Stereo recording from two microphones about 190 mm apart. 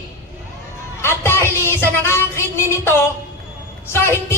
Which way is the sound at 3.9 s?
15° left (ahead or behind).